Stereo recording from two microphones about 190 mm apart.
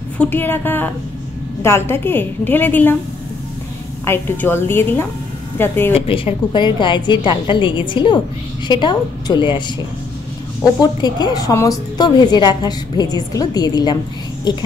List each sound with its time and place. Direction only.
0.2 s a woman's voice: 10° left (ahead or behind)
4.0 s a woman's voice: 10° left (ahead or behind)
5.9 s a woman's voice: 30° left (ahead or behind)
10.6 s a woman's voice: 20° left (ahead or behind)